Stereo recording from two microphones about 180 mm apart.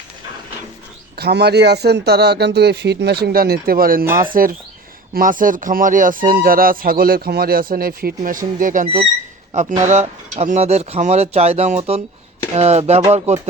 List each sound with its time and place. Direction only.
1.2 s speech: 65° right (ahead or behind); by 8.9 s 45° right (ahead or behind)
9.5 s speech: 35° right (ahead or behind)